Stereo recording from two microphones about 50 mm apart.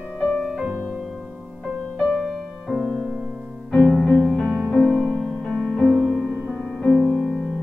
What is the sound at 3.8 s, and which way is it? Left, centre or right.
Music, centre.